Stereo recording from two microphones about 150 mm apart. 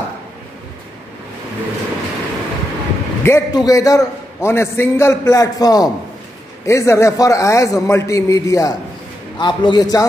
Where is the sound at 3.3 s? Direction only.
20° left (ahead or behind).